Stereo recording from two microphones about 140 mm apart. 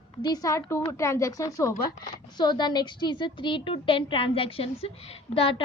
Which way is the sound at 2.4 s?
30° left (ahead or behind).